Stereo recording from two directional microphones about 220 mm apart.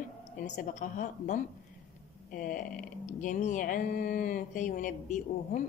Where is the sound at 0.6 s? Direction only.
35° left (ahead or behind).